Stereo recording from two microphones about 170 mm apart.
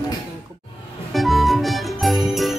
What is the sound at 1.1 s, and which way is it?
Music, centre (ahead or behind).